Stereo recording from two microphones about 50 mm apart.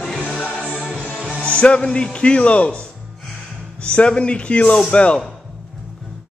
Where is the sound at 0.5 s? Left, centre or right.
Centre.